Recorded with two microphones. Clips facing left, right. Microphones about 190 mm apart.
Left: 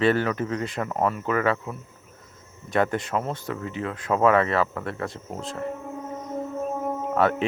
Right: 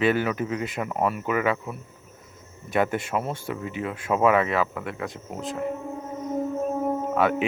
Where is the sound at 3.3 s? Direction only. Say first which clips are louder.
Even; 20° right (ahead or behind); by 5.5 s centre (ahead or behind).